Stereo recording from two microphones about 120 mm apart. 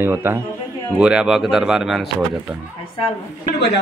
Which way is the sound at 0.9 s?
5° right (ahead or behind).